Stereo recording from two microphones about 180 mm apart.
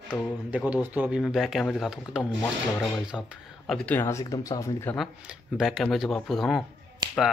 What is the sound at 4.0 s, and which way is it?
Speech, 15° left (ahead or behind).